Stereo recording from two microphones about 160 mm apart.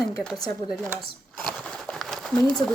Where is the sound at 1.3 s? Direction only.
10° left (ahead or behind).